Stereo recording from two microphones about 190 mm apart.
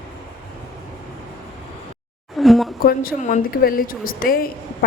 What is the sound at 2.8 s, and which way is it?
A woman's voice, 50° left (ahead or behind).